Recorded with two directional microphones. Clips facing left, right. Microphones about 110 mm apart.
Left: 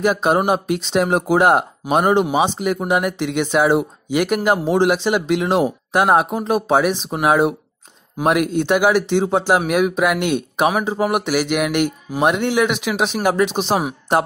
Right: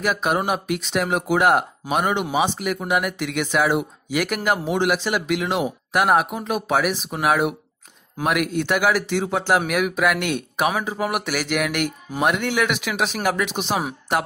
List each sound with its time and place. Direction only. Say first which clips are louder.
0.0 s speech: left 5 dB; 25° left (ahead or behind)
9.4 s speech: left 3 dB; 10° left (ahead or behind)
9.7 s speech: left 4 dB; 25° left (ahead or behind)